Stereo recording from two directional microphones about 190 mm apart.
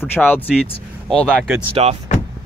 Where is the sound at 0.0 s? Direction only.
10° left (ahead or behind).